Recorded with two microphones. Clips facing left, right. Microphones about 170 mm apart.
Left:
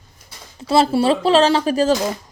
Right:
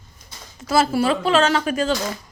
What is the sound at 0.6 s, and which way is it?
Speech, 30° left (ahead or behind).